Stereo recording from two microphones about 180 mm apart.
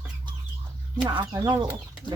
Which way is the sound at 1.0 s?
20° right (ahead or behind).